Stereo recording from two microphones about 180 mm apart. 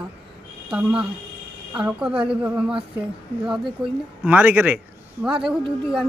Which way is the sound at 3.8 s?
5° right (ahead or behind).